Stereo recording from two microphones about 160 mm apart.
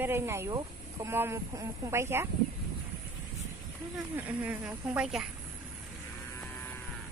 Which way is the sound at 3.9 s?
10° right (ahead or behind).